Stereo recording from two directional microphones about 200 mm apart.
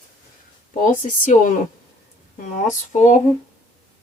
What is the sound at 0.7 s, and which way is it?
Speech, 40° left (ahead or behind).